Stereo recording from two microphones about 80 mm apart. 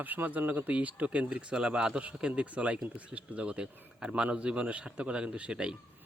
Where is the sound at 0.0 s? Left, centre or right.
Right.